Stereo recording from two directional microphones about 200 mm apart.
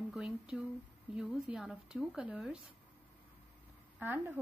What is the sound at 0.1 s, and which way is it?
A woman's voice, 5° right (ahead or behind).